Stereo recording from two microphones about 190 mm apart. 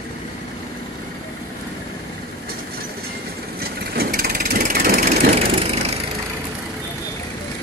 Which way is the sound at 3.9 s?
50° right (ahead or behind).